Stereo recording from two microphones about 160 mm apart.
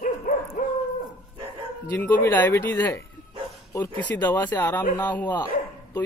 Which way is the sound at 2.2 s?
15° left (ahead or behind).